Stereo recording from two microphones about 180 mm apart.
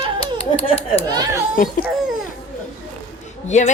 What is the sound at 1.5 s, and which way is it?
Speech, 50° left (ahead or behind).